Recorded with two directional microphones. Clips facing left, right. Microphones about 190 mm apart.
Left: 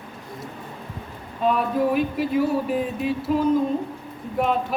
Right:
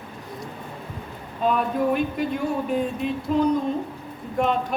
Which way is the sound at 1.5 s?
Centre (ahead or behind).